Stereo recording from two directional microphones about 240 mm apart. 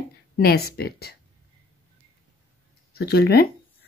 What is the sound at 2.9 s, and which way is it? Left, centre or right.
Speech, left.